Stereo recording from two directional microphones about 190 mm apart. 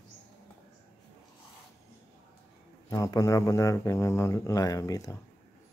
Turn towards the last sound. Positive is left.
turn(degrees=15)  # may be behind; listen again after turning